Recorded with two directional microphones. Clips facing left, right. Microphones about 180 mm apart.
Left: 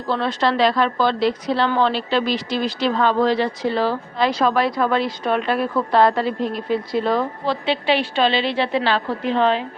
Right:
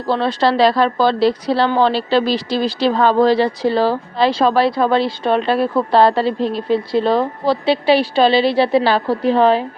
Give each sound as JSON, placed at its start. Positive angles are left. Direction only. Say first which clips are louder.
{"t": 0.1, "sound": "a woman's voice", "louder": "right 4 dB", "side_deg": -35}